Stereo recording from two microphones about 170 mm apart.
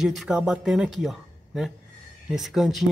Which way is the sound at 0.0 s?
Centre (ahead or behind).